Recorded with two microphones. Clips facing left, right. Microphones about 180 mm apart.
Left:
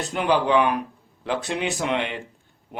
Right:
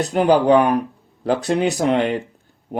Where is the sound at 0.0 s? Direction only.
40° right (ahead or behind).